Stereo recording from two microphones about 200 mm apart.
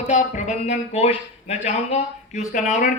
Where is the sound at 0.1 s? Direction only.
35° left (ahead or behind).